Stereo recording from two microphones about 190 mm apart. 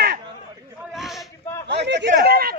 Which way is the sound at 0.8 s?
Centre (ahead or behind).